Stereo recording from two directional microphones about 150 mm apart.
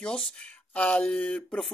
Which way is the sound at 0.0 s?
5° left (ahead or behind).